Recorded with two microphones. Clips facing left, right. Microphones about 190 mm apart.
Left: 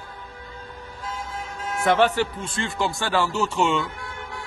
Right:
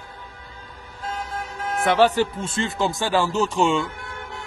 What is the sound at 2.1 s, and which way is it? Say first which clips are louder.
A man's voice: right 3 dB; 20° right (ahead or behind).